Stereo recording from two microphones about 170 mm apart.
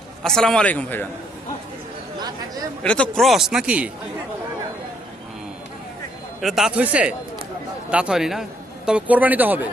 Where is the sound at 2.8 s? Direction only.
5° left (ahead or behind).